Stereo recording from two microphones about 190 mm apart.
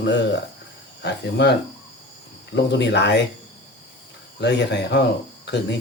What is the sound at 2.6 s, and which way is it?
Speech, 65° left (ahead or behind).